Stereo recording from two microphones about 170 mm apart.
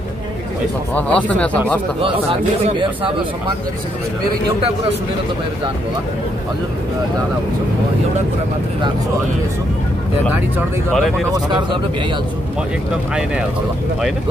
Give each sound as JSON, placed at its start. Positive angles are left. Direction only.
{"t": 0.9, "sound": "speech", "side_deg": 10}
{"t": 2.8, "sound": "speech", "side_deg": -30}
{"t": 10.9, "sound": "speech", "side_deg": 0}